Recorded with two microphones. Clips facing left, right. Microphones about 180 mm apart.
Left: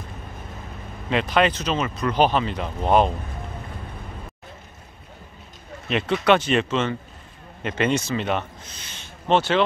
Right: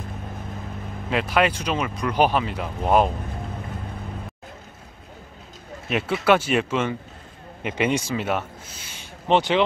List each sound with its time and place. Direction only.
1.1 s speech: 5° right (ahead or behind)
5.9 s speech: 5° right (ahead or behind)